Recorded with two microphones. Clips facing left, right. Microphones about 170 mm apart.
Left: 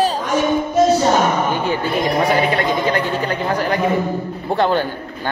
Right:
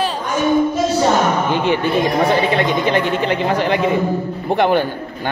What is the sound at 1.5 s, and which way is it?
A man's voice, 20° right (ahead or behind).